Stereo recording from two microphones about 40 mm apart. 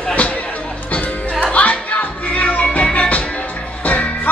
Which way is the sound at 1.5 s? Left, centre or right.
Left.